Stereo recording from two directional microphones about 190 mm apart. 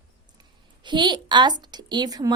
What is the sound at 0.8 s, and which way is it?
A woman's voice, 25° right (ahead or behind).